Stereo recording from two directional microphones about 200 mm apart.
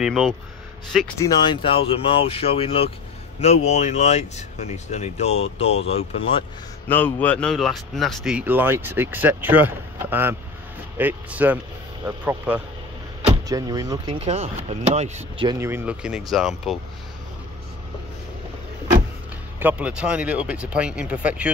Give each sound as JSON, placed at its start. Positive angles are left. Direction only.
{"t": 0.0, "sound": "speech", "side_deg": 0}
{"t": 1.2, "sound": "speech", "side_deg": 20}
{"t": 6.9, "sound": "speech", "side_deg": 10}
{"t": 15.4, "sound": "speech", "side_deg": -10}
{"t": 19.6, "sound": "speech", "side_deg": -5}